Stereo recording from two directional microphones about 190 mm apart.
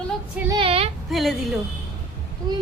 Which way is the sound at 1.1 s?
Centre (ahead or behind).